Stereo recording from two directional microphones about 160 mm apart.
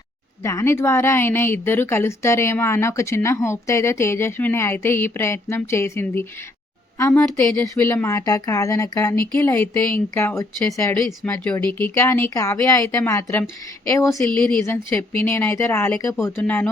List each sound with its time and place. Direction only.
0.4 s a woman's voice: 15° left (ahead or behind)